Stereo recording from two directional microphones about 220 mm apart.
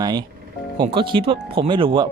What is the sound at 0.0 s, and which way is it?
Speech, 20° right (ahead or behind).